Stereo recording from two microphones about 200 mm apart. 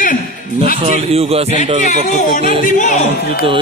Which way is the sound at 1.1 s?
30° right (ahead or behind).